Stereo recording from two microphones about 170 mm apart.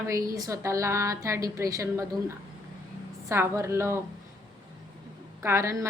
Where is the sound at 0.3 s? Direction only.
20° right (ahead or behind).